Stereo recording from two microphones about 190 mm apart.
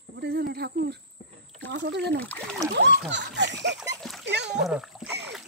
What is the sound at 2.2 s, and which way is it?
Speech, 5° left (ahead or behind).